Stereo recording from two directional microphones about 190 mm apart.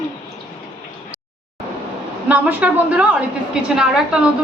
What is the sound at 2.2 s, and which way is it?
A woman's voice, 5° right (ahead or behind).